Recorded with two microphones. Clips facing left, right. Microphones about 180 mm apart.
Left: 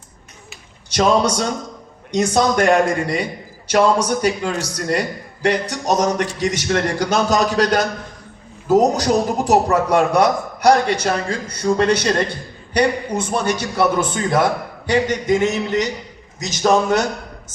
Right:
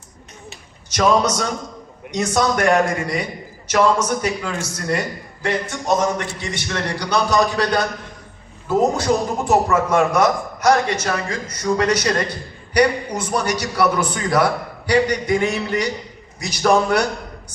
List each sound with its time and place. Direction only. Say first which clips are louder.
0.9 s a man's voice: left 1 dB; 30° left (ahead or behind)